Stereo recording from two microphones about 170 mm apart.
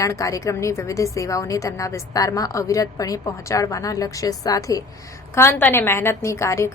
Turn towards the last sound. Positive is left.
turn(degrees=15)  # may be behind; listen again after turning